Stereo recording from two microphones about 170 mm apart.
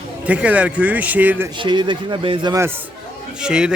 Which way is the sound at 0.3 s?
10° right (ahead or behind).